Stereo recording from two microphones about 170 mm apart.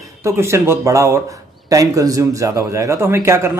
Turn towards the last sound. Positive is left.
turn(degrees=-15)  # may be behind; listen again after turning